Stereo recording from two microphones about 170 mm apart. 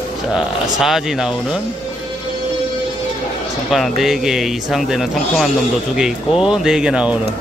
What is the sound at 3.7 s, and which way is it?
Speech, centre (ahead or behind).